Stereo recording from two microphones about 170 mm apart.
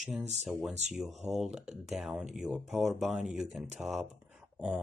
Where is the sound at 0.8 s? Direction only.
40° right (ahead or behind).